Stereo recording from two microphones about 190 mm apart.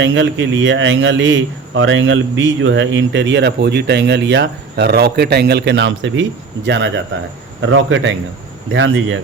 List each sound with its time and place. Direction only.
0.0 s a man's voice: 75° right (ahead or behind)
7.6 s speech: 90° right